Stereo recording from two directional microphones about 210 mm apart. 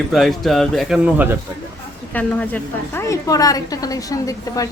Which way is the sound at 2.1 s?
5° left (ahead or behind).